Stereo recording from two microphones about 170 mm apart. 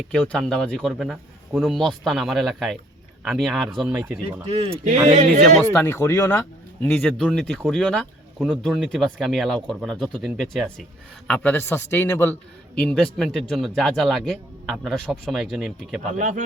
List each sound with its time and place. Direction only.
0.1 s speech: 5° left (ahead or behind)
4.4 s speech: 35° right (ahead or behind)
5.7 s a man's voice: 15° left (ahead or behind)
6.8 s speech: 5° left (ahead or behind)
11.3 s a man's voice: 10° left (ahead or behind)
16.1 s speech: 50° right (ahead or behind)